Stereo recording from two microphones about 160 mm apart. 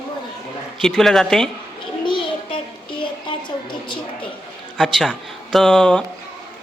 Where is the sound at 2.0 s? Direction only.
30° left (ahead or behind).